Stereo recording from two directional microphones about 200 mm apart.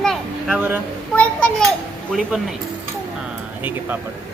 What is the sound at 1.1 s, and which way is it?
Children playing, 5° left (ahead or behind).